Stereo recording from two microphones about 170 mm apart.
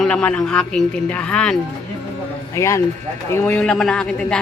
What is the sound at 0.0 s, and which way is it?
Speech, 5° left (ahead or behind).